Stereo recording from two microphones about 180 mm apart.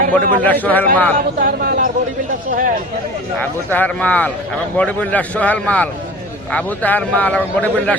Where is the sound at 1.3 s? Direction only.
55° right (ahead or behind).